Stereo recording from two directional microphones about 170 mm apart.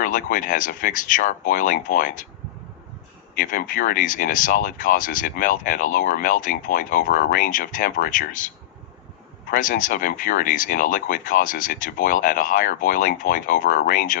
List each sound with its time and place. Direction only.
0.0 s speech: 50° left (ahead or behind)
3.3 s speech: 50° left (ahead or behind)
9.5 s speech: 55° left (ahead or behind)